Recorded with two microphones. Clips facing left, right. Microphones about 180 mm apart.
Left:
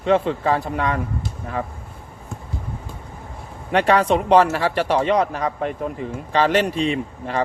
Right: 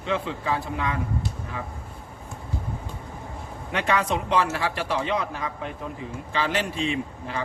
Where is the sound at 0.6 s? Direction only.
60° left (ahead or behind).